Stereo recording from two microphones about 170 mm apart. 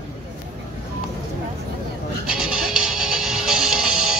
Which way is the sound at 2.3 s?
5° right (ahead or behind).